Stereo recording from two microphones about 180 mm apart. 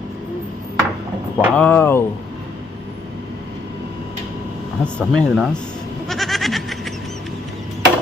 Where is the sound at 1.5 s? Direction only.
10° left (ahead or behind).